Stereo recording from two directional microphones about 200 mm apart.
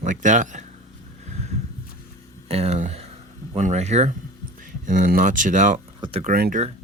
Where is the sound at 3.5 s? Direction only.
35° right (ahead or behind).